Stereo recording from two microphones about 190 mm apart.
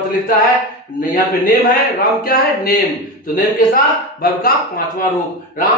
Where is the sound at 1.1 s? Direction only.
45° left (ahead or behind).